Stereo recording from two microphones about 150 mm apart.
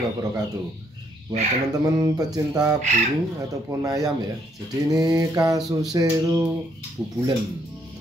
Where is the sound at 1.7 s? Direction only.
25° right (ahead or behind).